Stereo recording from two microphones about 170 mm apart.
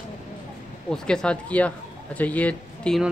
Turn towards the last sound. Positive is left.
turn(degrees=5)  # may be behind; listen again after turning